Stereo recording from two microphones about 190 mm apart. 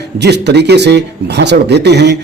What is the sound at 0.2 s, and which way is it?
A man's voice, 60° right (ahead or behind).